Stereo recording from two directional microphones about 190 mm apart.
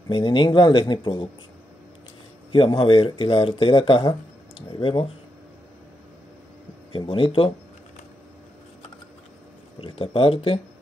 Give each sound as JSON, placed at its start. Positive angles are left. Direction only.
{"t": 0.1, "sound": "speech", "side_deg": 25}
{"t": 2.5, "sound": "speech", "side_deg": 25}
{"t": 6.9, "sound": "speech", "side_deg": 25}
{"t": 9.8, "sound": "speech", "side_deg": 25}